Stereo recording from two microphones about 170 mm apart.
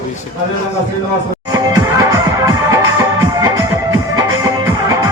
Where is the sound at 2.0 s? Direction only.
20° right (ahead or behind).